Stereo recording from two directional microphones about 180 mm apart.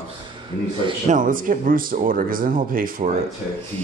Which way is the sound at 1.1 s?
50° right (ahead or behind).